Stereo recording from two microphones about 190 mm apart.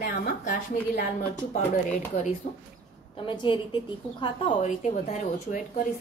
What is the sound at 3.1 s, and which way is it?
A woman's voice, 25° left (ahead or behind).